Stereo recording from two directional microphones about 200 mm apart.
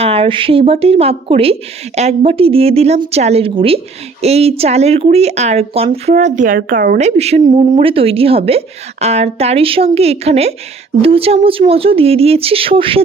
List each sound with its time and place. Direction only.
0.0 s speech: 30° right (ahead or behind)